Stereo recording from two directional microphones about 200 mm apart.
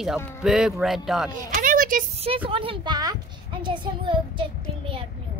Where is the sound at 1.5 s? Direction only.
45° right (ahead or behind).